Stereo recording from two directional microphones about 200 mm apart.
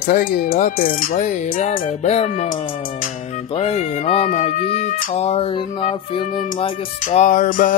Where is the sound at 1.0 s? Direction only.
40° left (ahead or behind).